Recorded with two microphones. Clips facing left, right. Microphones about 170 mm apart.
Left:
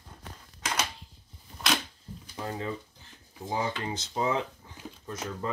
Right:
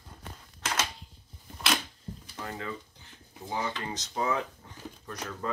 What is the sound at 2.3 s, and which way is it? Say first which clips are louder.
Speech: left 4 dB; 20° left (ahead or behind).